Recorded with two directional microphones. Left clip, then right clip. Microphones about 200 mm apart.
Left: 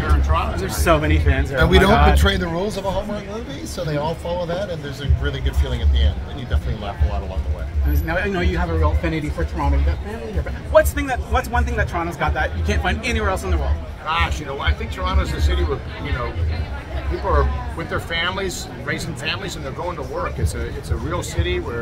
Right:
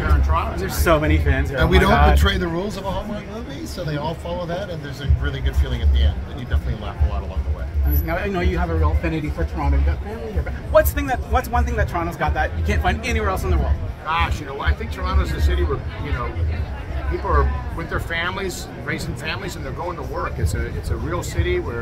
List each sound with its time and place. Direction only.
0.6 s a man's voice: 10° right (ahead or behind)
1.6 s speech: 20° left (ahead or behind)
7.9 s a man's voice: 10° right (ahead or behind)
10.7 s a man's voice: 10° right (ahead or behind)
14.0 s speech: 10° left (ahead or behind)
17.3 s speech: 5° left (ahead or behind)
21.1 s speech: 10° left (ahead or behind)